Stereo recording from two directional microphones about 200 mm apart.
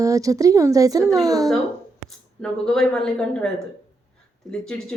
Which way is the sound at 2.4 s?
5° left (ahead or behind).